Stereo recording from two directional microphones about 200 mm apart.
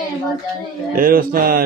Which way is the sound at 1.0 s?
45° right (ahead or behind).